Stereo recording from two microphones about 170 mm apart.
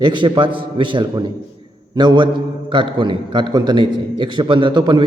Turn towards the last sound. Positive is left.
turn(degrees=-25)  # may be behind; listen again after turning